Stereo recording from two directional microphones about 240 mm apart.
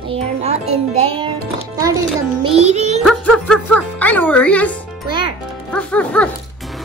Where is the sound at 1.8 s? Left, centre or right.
Centre.